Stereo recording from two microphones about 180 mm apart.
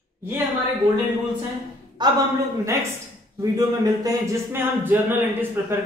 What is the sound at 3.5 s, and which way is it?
Speech, 20° right (ahead or behind).